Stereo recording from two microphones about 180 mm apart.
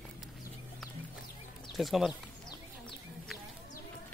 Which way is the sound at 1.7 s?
Centre (ahead or behind).